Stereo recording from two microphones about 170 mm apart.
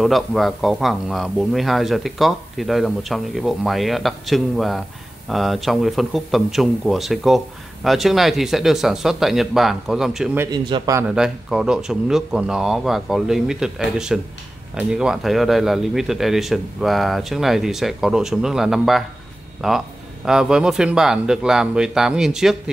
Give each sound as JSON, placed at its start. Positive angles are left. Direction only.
{"t": 0.0, "sound": "speech", "side_deg": 0}
{"t": 10.4, "sound": "a man's voice", "side_deg": -20}
{"t": 11.1, "sound": "speech", "side_deg": -5}